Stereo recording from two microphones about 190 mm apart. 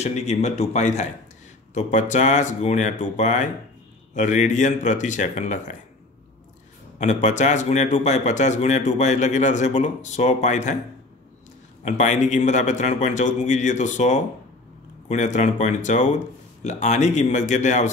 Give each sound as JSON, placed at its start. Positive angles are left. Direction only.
{"t": 0.0, "sound": "a man's voice", "side_deg": 35}
{"t": 7.0, "sound": "a man's voice", "side_deg": 40}
{"t": 11.8, "sound": "a man's voice", "side_deg": 40}